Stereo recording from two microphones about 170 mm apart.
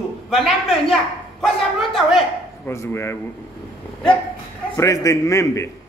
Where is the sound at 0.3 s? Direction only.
Centre (ahead or behind).